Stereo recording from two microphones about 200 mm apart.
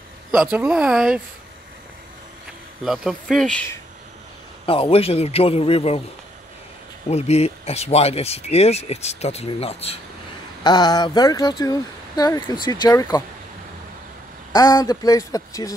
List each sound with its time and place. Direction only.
0.3 s speech: 10° right (ahead or behind)
2.8 s speech: centre (ahead or behind)
4.6 s speech: 25° left (ahead or behind)
7.1 s speech: 30° left (ahead or behind)
14.5 s speech: 20° left (ahead or behind)